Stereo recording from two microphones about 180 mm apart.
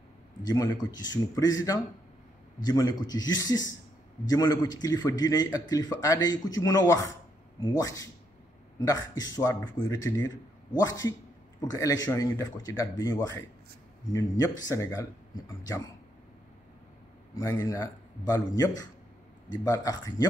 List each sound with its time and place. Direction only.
0.5 s speech: 20° left (ahead or behind)
2.6 s speech: 20° left (ahead or behind)
17.4 s speech: 15° left (ahead or behind)